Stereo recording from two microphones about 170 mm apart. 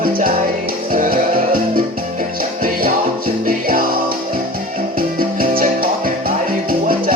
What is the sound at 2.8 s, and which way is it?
Music, 60° right (ahead or behind).